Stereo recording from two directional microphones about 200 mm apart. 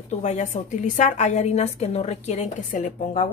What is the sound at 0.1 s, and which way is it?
A woman's voice, 35° left (ahead or behind).